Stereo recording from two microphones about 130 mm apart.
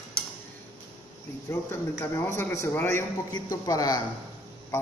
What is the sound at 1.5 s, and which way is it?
A man's voice, 20° left (ahead or behind).